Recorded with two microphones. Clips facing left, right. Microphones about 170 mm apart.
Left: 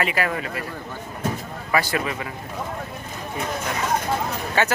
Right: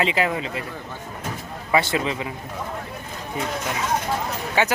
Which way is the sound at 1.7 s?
25° right (ahead or behind).